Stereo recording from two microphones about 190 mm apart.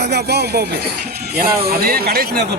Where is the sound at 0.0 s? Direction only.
60° right (ahead or behind).